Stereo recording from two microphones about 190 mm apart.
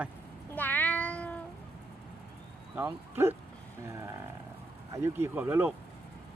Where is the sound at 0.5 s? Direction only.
10° left (ahead or behind).